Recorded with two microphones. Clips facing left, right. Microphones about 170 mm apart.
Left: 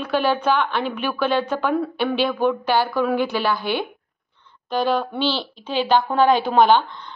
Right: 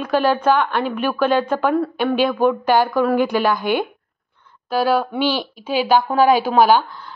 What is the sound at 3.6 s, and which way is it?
Speech, 50° right (ahead or behind).